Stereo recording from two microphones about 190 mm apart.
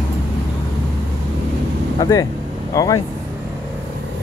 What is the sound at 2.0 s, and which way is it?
Speech, 20° left (ahead or behind).